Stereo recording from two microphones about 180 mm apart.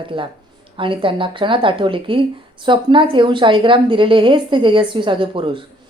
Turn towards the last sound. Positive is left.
turn(degrees=-30)  # may be behind; listen again after turning